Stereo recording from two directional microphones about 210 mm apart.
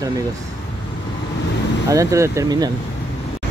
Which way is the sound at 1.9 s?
15° right (ahead or behind).